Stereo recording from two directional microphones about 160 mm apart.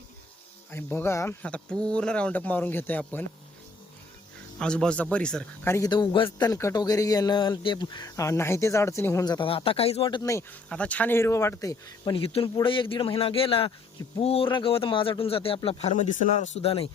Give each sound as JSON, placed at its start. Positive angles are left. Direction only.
{"t": 0.7, "sound": "speech", "side_deg": 15}
{"t": 4.6, "sound": "speech", "side_deg": 5}
{"t": 5.9, "sound": "speech", "side_deg": 30}
{"t": 10.7, "sound": "speech", "side_deg": 10}
{"t": 12.1, "sound": "speech", "side_deg": 35}